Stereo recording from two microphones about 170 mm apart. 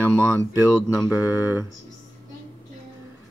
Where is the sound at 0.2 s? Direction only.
15° right (ahead or behind).